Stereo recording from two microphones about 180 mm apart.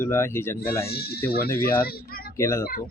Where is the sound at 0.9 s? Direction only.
60° left (ahead or behind).